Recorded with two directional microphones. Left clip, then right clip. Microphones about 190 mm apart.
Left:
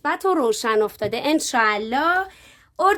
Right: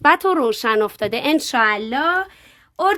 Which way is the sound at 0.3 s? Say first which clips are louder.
Right 2 dB; 10° right (ahead or behind).